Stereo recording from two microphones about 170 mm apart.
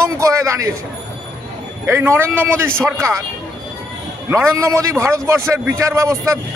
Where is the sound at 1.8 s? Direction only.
15° right (ahead or behind).